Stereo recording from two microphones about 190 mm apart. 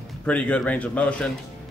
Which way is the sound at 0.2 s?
5° left (ahead or behind).